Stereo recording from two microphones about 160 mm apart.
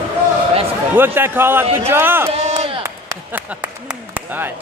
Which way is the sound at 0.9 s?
15° right (ahead or behind).